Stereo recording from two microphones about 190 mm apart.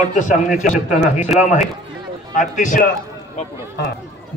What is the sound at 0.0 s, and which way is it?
A man's voice, 40° left (ahead or behind).